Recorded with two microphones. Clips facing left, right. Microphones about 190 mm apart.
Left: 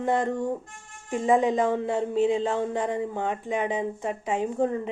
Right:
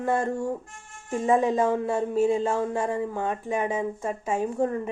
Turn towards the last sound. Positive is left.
turn(degrees=20)  # may be behind; listen again after turning